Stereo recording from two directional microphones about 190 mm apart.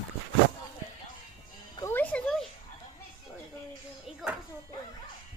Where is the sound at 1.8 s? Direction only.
10° left (ahead or behind).